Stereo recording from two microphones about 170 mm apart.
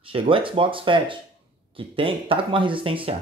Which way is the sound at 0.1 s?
30° right (ahead or behind).